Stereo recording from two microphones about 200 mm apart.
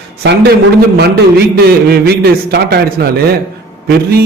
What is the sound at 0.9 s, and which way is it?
A man's voice, 55° right (ahead or behind).